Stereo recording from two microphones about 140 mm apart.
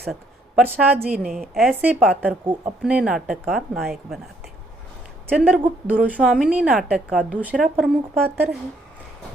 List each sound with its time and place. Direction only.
0.0 s a woman's voice: centre (ahead or behind)
1.3 s speech: centre (ahead or behind)
1.9 s a woman's voice: 10° right (ahead or behind)
5.4 s a woman's voice: 10° right (ahead or behind)